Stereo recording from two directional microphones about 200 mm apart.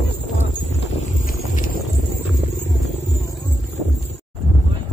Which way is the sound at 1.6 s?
45° left (ahead or behind).